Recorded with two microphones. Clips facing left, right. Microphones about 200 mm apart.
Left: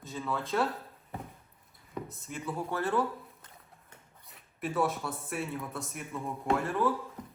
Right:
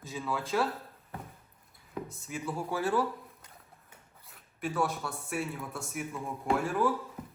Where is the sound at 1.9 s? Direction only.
Centre (ahead or behind).